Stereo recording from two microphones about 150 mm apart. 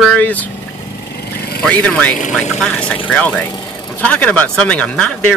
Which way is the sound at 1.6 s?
5° left (ahead or behind).